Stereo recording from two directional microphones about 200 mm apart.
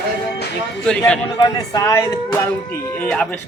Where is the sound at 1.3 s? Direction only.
20° left (ahead or behind).